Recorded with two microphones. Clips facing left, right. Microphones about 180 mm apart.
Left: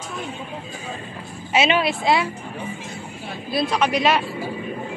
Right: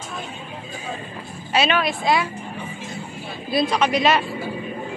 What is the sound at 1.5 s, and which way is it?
Speech, 25° left (ahead or behind).